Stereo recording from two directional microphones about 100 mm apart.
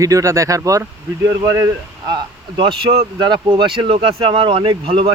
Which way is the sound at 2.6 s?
60° right (ahead or behind).